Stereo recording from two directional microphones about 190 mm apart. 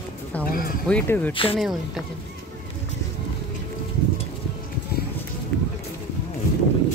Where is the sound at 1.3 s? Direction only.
30° left (ahead or behind).